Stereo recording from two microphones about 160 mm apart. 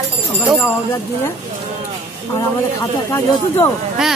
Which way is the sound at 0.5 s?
15° left (ahead or behind).